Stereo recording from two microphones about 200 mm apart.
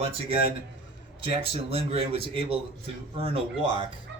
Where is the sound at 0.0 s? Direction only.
30° right (ahead or behind).